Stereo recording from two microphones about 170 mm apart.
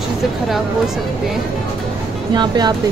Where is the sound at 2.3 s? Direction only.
25° right (ahead or behind).